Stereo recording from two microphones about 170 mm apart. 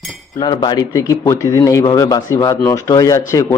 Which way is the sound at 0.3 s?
25° left (ahead or behind).